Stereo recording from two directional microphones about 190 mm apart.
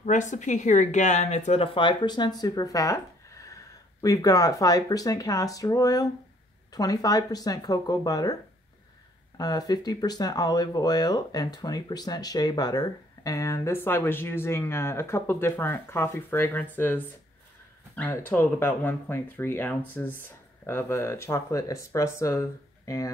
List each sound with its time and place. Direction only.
0.0 s speech: 40° left (ahead or behind); by 8.4 s 20° left (ahead or behind)
9.4 s speech: 20° left (ahead or behind)